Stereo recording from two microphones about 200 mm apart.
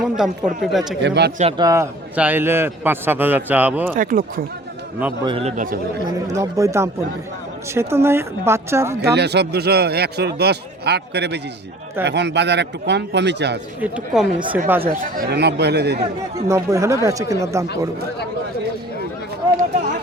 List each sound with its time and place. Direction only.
0.0 s speech: centre (ahead or behind)
1.0 s a man's voice: 55° right (ahead or behind)
1.4 s a man's voice: 25° right (ahead or behind); by 3.9 s 10° right (ahead or behind)
3.9 s speech: 45° right (ahead or behind)
5.2 s speech: 30° right (ahead or behind)
6.2 s a man's voice: 15° right (ahead or behind)
9.0 s a man's voice: 55° right (ahead or behind)
13.8 s a man's voice: 5° right (ahead or behind)
15.2 s a man's voice: 55° right (ahead or behind)
16.5 s a man's voice: 15° right (ahead or behind)